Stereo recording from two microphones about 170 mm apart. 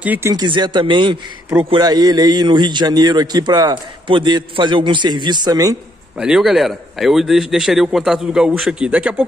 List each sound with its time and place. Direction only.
0.0 s speech: 10° right (ahead or behind)
0.3 s a man's voice: 25° right (ahead or behind)
6.1 s a man's voice: 5° right (ahead or behind)